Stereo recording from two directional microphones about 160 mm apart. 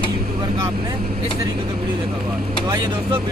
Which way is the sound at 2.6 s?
30° right (ahead or behind).